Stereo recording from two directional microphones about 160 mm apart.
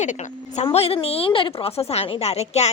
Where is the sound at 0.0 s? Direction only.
50° left (ahead or behind).